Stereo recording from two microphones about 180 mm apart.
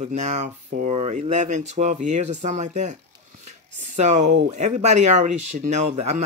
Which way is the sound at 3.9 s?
40° right (ahead or behind).